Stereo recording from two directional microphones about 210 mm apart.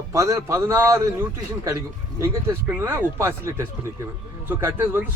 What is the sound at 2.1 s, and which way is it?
A man's voice, 10° right (ahead or behind).